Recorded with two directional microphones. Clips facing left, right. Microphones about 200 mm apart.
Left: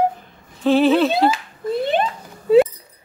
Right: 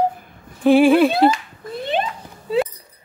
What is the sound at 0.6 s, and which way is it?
Speech, 10° right (ahead or behind).